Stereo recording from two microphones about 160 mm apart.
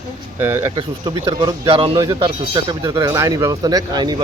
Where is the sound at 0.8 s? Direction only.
30° right (ahead or behind).